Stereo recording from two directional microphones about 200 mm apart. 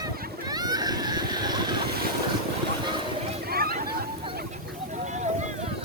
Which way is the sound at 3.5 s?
50° right (ahead or behind).